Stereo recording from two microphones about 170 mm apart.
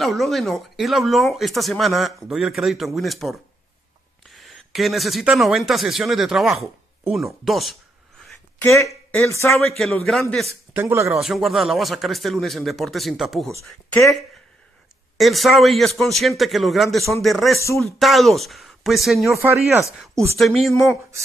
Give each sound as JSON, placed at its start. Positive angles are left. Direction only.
{"t": 0.0, "sound": "speech", "side_deg": 0}
{"t": 8.6, "sound": "speech", "side_deg": 15}
{"t": 10.7, "sound": "speech", "side_deg": -15}
{"t": 11.1, "sound": "speech", "side_deg": 0}
{"t": 17.6, "sound": "speech", "side_deg": 15}
{"t": 17.8, "sound": "speech", "side_deg": 0}
{"t": 19.3, "sound": "speech", "side_deg": -15}
{"t": 20.3, "sound": "speech", "side_deg": 0}